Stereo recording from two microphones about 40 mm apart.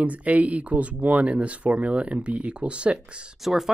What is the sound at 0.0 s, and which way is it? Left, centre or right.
Speech, right.